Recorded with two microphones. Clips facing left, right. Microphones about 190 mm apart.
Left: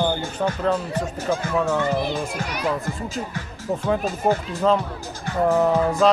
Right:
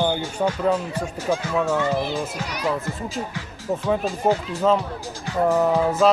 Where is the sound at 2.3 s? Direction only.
50° left (ahead or behind).